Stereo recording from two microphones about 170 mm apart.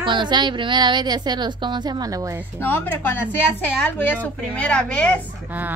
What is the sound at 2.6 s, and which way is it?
Speech, 10° left (ahead or behind).